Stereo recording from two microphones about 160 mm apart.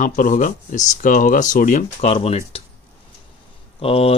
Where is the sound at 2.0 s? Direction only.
40° left (ahead or behind).